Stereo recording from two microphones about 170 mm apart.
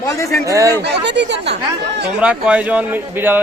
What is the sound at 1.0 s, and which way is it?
Speech, 90° right.